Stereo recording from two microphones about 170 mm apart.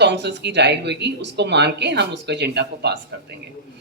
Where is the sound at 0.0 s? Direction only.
90° right.